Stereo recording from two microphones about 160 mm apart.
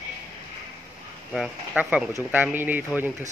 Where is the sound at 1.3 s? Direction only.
Centre (ahead or behind).